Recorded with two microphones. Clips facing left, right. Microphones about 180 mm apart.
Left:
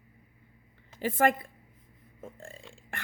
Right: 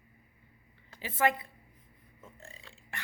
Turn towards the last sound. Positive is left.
turn(degrees=50)  # may be behind; listen again after turning